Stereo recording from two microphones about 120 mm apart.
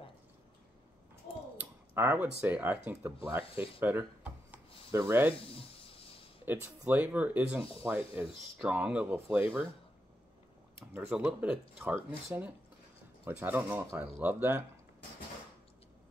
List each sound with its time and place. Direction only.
1.6 s speech: 15° right (ahead or behind)
3.8 s a sound: 15° right (ahead or behind)
4.9 s speech: 20° right (ahead or behind)
5.5 s music: 50° left (ahead or behind)
6.4 s speech: 15° right (ahead or behind)
10.9 s speech: 10° right (ahead or behind)